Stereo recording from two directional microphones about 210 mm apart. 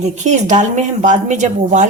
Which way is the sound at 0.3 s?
35° right (ahead or behind).